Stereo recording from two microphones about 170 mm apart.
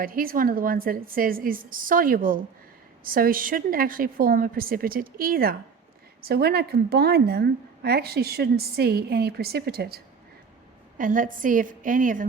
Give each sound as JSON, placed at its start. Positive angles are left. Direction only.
{"t": 0.0, "sound": "a woman's voice", "side_deg": -55}
{"t": 10.9, "sound": "a woman's voice", "side_deg": -50}